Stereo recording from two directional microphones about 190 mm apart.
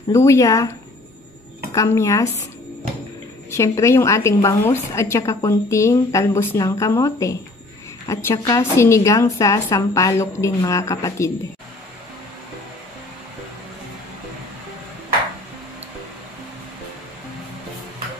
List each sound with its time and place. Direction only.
0.1 s a woman's voice: 15° left (ahead or behind)
1.7 s a woman's voice: 15° left (ahead or behind)
3.4 s a woman's voice: 15° left (ahead or behind)